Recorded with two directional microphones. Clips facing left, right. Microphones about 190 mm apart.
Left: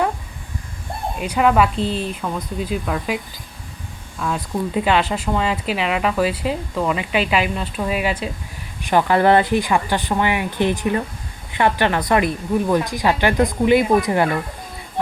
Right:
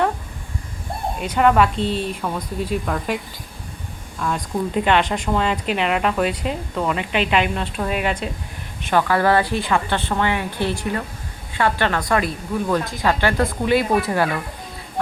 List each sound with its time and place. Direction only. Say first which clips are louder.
1.2 s a woman's voice: even; 5° left (ahead or behind)
1.7 s speech: even; 35° left (ahead or behind)
2.2 s speech: even; centre (ahead or behind)
4.2 s speech: even; 5° left (ahead or behind)
8.9 s a woman's voice: left 3 dB; 20° left (ahead or behind)